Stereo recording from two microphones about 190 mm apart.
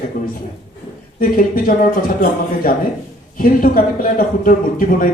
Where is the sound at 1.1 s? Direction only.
50° left (ahead or behind).